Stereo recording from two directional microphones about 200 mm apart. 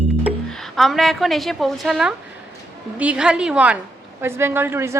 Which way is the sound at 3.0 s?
5° right (ahead or behind).